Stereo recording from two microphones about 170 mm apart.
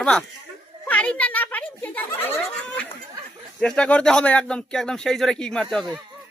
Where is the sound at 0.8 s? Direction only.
10° left (ahead or behind).